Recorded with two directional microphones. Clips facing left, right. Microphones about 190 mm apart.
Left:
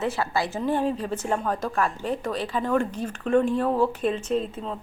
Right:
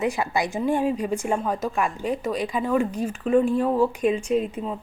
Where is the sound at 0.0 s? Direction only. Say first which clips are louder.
Right 2 dB; 15° right (ahead or behind).